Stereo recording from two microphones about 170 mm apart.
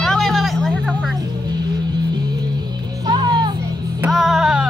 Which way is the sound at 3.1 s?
25° right (ahead or behind).